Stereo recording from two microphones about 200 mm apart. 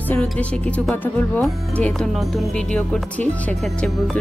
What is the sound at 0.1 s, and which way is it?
Speech, 5° left (ahead or behind).